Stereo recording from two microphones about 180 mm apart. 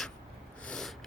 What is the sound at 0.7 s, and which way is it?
Snort, 5° left (ahead or behind).